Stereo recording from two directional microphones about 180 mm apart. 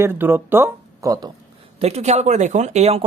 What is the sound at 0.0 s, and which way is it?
Speech, 10° right (ahead or behind).